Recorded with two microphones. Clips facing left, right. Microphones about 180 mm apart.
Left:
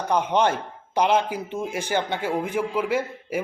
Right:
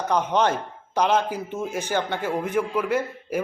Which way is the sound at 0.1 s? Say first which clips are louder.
Left 1 dB; 10° left (ahead or behind).